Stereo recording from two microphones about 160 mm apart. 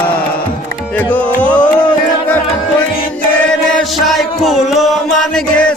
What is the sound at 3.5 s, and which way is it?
Music, centre (ahead or behind).